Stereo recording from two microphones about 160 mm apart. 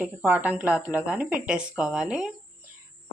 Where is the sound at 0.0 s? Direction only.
10° right (ahead or behind).